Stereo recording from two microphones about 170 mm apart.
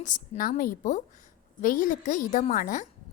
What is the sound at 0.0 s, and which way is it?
A woman's voice, 50° left (ahead or behind).